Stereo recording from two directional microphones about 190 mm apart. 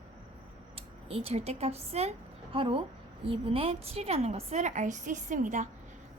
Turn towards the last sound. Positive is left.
turn(degrees=-40)  # may be behind; listen again after turning